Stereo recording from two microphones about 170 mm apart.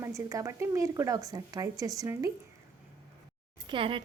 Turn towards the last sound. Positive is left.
turn(degrees=-30)  # may be behind; listen again after turning